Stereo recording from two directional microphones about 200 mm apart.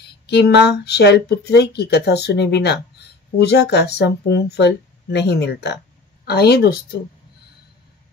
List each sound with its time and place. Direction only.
0.0 s a woman's voice: 55° left (ahead or behind)